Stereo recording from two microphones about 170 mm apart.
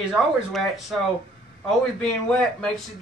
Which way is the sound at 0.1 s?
Centre (ahead or behind).